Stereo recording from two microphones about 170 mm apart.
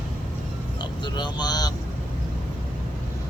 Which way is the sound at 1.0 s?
25° left (ahead or behind).